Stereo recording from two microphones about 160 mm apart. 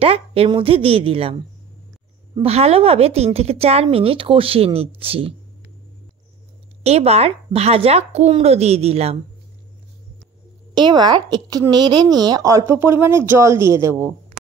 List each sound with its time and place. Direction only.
0.0 s speech: 35° right (ahead or behind)
2.4 s speech: 40° right (ahead or behind)
6.8 s speech: 40° right (ahead or behind)
10.7 s a woman's voice: 30° right (ahead or behind)